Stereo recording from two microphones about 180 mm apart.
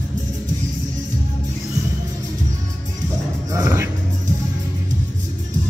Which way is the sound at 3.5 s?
15° right (ahead or behind).